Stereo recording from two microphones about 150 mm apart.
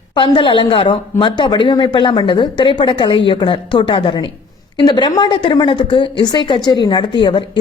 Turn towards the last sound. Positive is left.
turn(degrees=30)  # may be behind; listen again after turning